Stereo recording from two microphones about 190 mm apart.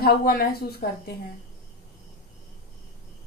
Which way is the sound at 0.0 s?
50° left (ahead or behind).